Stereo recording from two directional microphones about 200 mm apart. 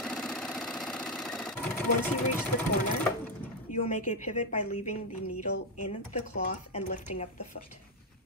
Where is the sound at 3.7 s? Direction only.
40° left (ahead or behind).